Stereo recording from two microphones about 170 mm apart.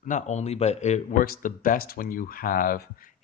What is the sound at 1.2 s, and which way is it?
Speech, 55° left (ahead or behind).